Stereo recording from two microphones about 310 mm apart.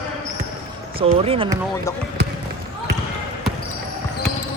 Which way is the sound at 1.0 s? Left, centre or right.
Centre.